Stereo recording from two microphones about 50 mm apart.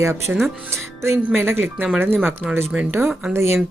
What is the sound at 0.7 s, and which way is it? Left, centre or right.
Speech, right.